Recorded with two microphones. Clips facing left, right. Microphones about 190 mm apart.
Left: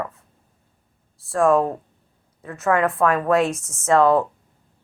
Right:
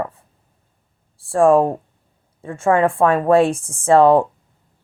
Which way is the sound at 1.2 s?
30° right (ahead or behind).